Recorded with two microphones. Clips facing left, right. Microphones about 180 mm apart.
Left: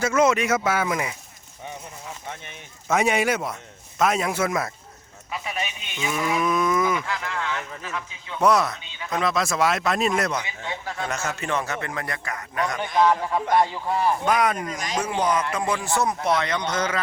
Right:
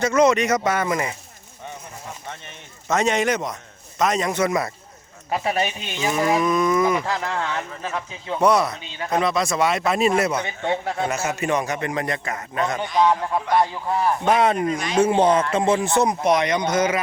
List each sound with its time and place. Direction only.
0.0 s a man's voice: 5° left (ahead or behind)
2.9 s a man's voice: 10° left (ahead or behind)
5.3 s speech: 40° right (ahead or behind)
6.4 s a man's voice: 5° left (ahead or behind)
7.0 s speech: 35° right (ahead or behind)
8.4 s a man's voice: centre (ahead or behind)
9.0 s speech: 45° right (ahead or behind)
9.2 s a man's voice: centre (ahead or behind)
11.1 s a man's voice: 10° right (ahead or behind); by 12.8 s 25° right (ahead or behind)
13.0 s a man's voice: centre (ahead or behind)
14.3 s a man's voice: 25° right (ahead or behind); by 17.0 s 10° right (ahead or behind)